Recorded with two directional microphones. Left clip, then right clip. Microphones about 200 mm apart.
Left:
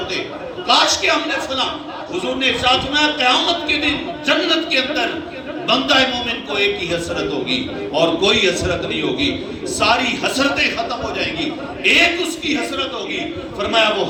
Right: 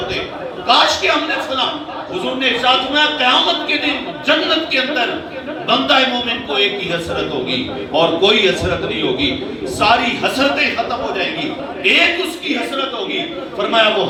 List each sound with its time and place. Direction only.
0.7 s a man's voice: 50° left (ahead or behind)
2.2 s a man's voice: 50° left (ahead or behind)
9.8 s a man's voice: 50° left (ahead or behind)
13.6 s a man's voice: 50° left (ahead or behind)